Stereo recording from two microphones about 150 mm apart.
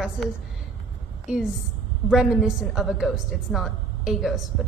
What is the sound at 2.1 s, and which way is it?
A woman's voice, 5° right (ahead or behind).